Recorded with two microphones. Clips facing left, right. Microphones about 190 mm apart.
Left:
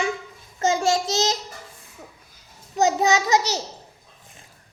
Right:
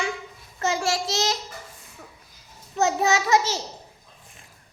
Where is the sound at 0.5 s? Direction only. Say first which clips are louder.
Left 4 dB; 20° left (ahead or behind).